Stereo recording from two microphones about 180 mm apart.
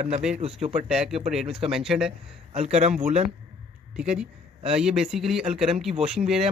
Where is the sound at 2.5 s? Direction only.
35° right (ahead or behind).